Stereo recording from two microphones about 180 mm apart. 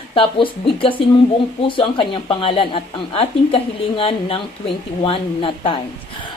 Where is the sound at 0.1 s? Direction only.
30° left (ahead or behind).